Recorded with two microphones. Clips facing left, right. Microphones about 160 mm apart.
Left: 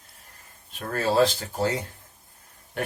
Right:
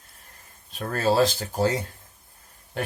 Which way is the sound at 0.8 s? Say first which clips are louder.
Even; 40° right (ahead or behind).